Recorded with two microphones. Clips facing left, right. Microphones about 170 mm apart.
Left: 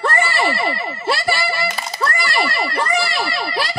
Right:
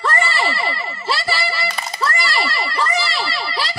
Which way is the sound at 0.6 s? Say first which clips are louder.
Left 3 dB; 55° left (ahead or behind).